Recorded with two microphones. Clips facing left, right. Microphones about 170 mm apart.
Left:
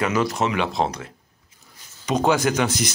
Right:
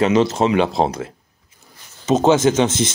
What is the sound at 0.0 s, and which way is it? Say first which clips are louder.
Speech: right 6 dB; 25° right (ahead or behind).